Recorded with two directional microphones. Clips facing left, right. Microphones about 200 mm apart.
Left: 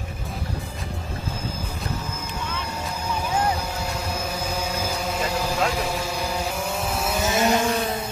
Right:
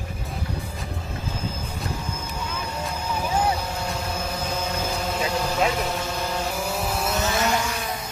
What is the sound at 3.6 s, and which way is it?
Vehicle, 5° left (ahead or behind).